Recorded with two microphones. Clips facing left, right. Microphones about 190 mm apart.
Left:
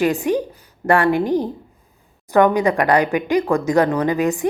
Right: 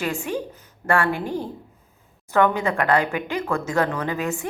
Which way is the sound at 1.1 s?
15° left (ahead or behind).